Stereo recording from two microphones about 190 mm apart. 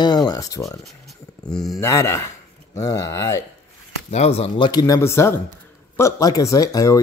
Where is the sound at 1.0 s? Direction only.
Centre (ahead or behind).